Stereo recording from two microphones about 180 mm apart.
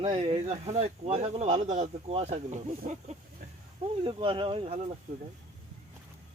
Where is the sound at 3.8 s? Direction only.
30° right (ahead or behind).